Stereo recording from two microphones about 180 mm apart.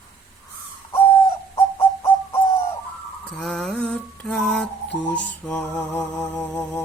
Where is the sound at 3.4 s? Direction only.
5° left (ahead or behind).